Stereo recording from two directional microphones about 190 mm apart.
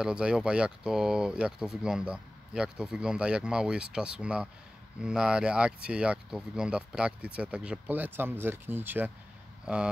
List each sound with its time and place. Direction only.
0.0 s speech: 5° right (ahead or behind)